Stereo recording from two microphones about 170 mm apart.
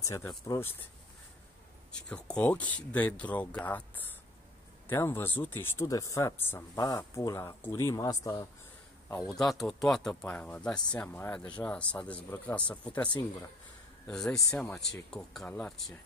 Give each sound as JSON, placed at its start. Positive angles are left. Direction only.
{"t": 0.0, "sound": "speech", "side_deg": 15}
{"t": 1.9, "sound": "speech", "side_deg": 5}
{"t": 9.4, "sound": "speech", "side_deg": 0}